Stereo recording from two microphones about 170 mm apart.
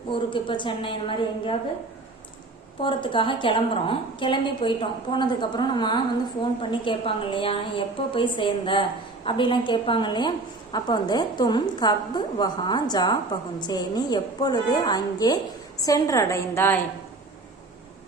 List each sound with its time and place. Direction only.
0.1 s a woman's voice: 30° left (ahead or behind)
2.8 s a woman's voice: 30° left (ahead or behind); by 16.8 s 15° left (ahead or behind)